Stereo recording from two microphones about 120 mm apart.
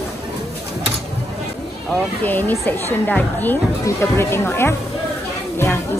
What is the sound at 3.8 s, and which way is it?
Speech, 20° left (ahead or behind).